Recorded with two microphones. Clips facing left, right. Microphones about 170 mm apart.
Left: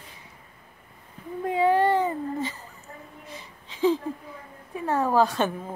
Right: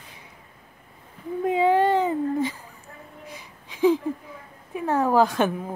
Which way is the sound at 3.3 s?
15° right (ahead or behind).